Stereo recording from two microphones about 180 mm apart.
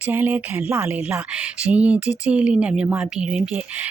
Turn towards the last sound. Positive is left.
turn(degrees=-10)  # may be behind; listen again after turning